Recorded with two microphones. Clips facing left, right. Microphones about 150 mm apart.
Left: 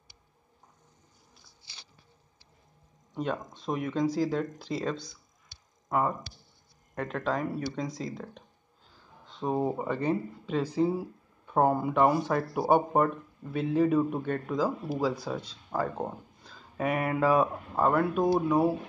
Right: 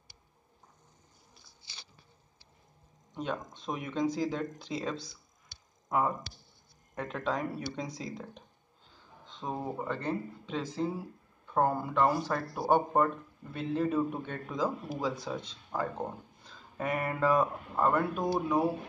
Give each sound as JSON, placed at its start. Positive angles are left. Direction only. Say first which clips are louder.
{"t": 3.2, "sound": "speech", "louder": "left 3 dB", "side_deg": 0}
{"t": 9.2, "sound": "a sound", "louder": "left 7 dB", "side_deg": 10}
{"t": 9.6, "sound": "speech", "louder": "left 6 dB", "side_deg": 20}